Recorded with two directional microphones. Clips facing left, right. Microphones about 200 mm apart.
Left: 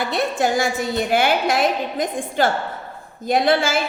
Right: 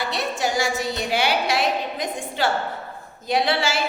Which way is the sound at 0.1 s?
55° left (ahead or behind).